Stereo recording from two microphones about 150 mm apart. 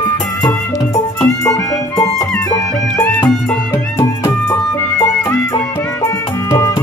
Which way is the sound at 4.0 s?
20° left (ahead or behind).